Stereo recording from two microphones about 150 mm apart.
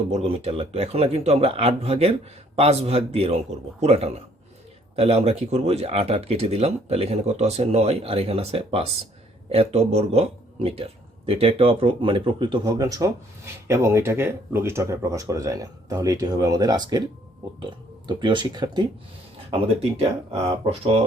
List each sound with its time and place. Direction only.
0.1 s a man's voice: 40° right (ahead or behind)
19.5 s speech: 40° right (ahead or behind)